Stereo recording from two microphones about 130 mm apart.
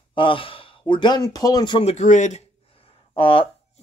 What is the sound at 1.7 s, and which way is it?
Speech, 55° left (ahead or behind).